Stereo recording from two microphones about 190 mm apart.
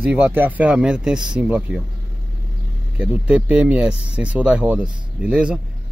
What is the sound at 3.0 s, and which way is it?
Speech, 5° right (ahead or behind).